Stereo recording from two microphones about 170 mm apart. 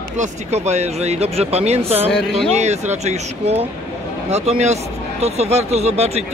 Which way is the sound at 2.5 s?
40° right (ahead or behind).